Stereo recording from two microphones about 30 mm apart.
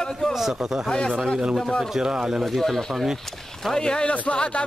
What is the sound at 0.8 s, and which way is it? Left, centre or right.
Speech, left.